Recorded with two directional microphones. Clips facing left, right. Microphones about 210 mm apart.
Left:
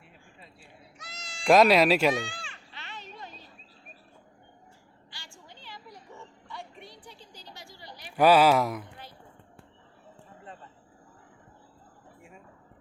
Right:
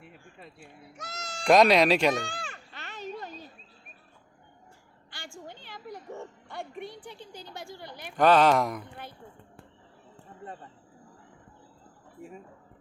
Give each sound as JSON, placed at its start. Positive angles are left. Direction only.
{"t": 0.0, "sound": "cat", "side_deg": -55}
{"t": 1.5, "sound": "speech", "side_deg": 5}
{"t": 2.2, "sound": "a sound", "side_deg": -40}
{"t": 5.5, "sound": "music", "side_deg": -55}
{"t": 8.1, "sound": "speech", "side_deg": 10}